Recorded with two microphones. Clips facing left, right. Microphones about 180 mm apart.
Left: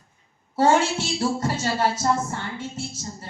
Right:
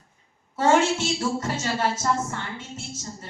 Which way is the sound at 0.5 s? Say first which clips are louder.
Left 1 dB; 35° left (ahead or behind).